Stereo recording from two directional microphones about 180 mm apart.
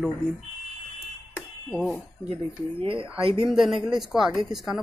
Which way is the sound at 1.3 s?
5° left (ahead or behind).